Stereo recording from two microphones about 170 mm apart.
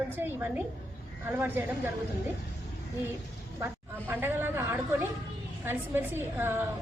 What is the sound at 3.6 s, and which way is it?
A woman's voice, 10° right (ahead or behind).